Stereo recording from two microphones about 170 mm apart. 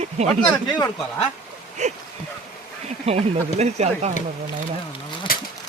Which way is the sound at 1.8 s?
45° right (ahead or behind).